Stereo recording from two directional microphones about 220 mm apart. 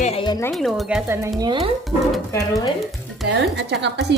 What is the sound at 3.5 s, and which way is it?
Speech, 50° right (ahead or behind).